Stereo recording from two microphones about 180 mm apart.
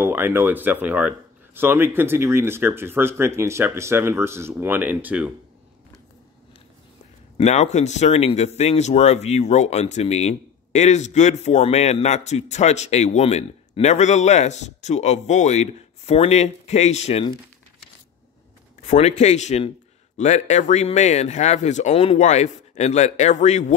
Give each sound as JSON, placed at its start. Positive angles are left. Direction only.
{"t": 0.0, "sound": "speech", "side_deg": -10}
{"t": 7.3, "sound": "speech", "side_deg": 40}
{"t": 18.8, "sound": "speech", "side_deg": 40}